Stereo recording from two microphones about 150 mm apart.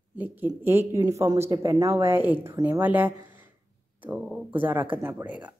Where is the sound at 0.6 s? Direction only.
15° right (ahead or behind).